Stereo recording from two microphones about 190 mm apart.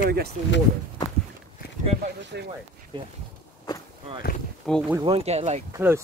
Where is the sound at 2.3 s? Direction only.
60° right (ahead or behind).